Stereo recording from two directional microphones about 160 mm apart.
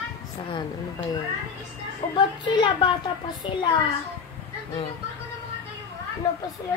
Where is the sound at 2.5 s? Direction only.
30° left (ahead or behind).